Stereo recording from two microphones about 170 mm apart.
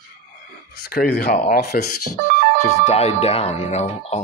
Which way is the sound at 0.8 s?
60° left (ahead or behind).